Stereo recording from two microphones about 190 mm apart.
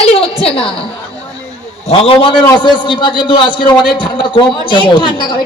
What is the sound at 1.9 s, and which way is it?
A man's voice, 30° left (ahead or behind).